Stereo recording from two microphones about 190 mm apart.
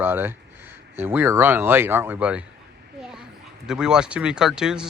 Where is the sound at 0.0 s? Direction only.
10° right (ahead or behind).